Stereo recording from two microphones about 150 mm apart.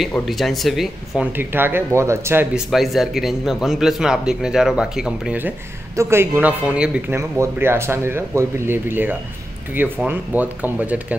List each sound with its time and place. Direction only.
0.2 s a man's voice: centre (ahead or behind)
1.3 s speech: 15° right (ahead or behind)
2.5 s a man's voice: centre (ahead or behind)